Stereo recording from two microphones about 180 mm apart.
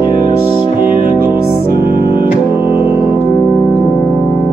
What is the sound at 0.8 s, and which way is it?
Music, 50° right (ahead or behind).